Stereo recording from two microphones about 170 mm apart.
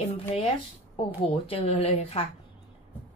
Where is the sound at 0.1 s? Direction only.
35° left (ahead or behind).